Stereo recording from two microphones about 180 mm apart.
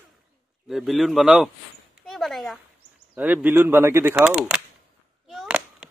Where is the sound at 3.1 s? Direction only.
10° right (ahead or behind).